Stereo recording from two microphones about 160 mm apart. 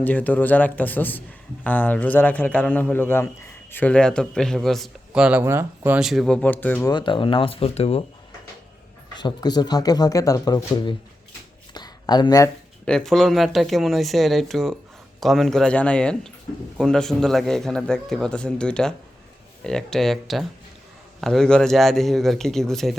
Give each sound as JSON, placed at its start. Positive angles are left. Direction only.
{"t": 0.0, "sound": "a man's voice", "side_deg": 10}
{"t": 6.9, "sound": "speech", "side_deg": 30}
{"t": 9.1, "sound": "speech", "side_deg": 25}
{"t": 11.7, "sound": "a sound", "side_deg": 25}
{"t": 12.8, "sound": "speech", "side_deg": 5}